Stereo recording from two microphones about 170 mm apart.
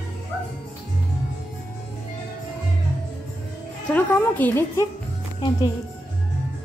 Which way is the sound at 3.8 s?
10° left (ahead or behind).